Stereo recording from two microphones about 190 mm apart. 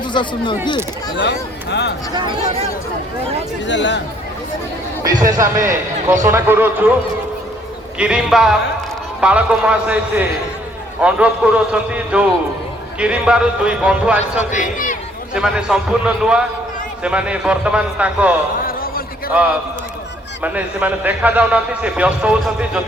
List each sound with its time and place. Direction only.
0.0 s speech: 25° left (ahead or behind)
1.2 s speech: 65° left (ahead or behind)
2.1 s speech: 25° right (ahead or behind)
3.7 s speech: 70° left (ahead or behind)
5.4 s a man's voice: 15° right (ahead or behind)
7.9 s a man's voice: 5° right (ahead or behind)
14.5 s speech: 45° left (ahead or behind)
15.4 s a man's voice: 5° right (ahead or behind)
18.6 s a sound: 50° left (ahead or behind)
20.4 s a man's voice: 10° right (ahead or behind)